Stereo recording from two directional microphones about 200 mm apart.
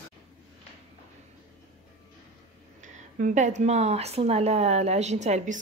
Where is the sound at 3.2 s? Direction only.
40° right (ahead or behind).